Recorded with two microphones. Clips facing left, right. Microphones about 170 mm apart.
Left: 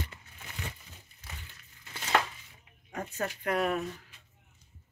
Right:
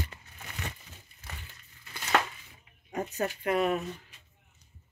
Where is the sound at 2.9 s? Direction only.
20° right (ahead or behind).